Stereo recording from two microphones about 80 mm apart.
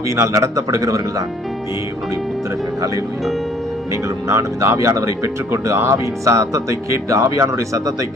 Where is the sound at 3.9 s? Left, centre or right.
Right.